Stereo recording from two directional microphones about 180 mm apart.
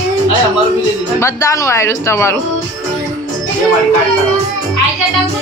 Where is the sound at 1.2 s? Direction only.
20° left (ahead or behind).